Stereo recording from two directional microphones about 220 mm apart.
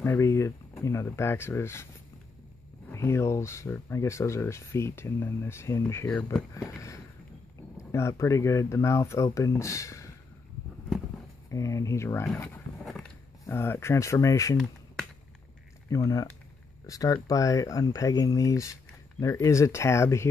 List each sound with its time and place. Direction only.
0.0 s speech: 15° left (ahead or behind)
2.9 s speech: 10° left (ahead or behind)
11.5 s speech: 15° left (ahead or behind)
13.5 s speech: 10° left (ahead or behind)
15.9 s speech: 15° left (ahead or behind)